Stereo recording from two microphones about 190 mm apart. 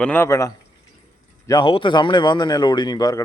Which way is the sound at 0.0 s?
10° left (ahead or behind).